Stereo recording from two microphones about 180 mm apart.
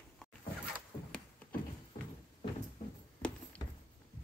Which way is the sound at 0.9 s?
20° left (ahead or behind).